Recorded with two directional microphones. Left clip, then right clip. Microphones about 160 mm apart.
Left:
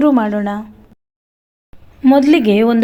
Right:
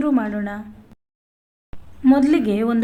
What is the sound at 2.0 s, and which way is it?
Speech, 30° left (ahead or behind).